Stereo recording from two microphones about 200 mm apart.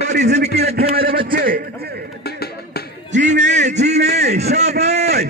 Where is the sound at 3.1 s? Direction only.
35° right (ahead or behind).